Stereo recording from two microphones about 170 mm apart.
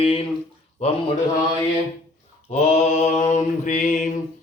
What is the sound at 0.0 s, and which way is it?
Mantra, 35° left (ahead or behind).